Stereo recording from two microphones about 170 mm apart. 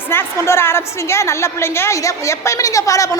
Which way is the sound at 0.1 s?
15° left (ahead or behind).